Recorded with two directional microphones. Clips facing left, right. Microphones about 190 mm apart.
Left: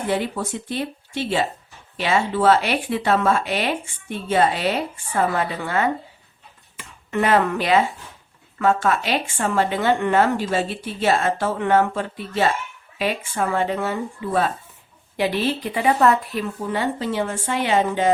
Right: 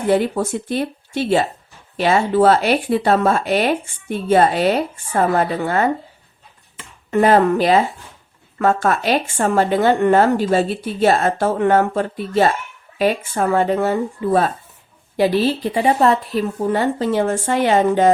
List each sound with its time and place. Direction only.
0.1 s speech: 45° right (ahead or behind)
7.1 s speech: 40° right (ahead or behind)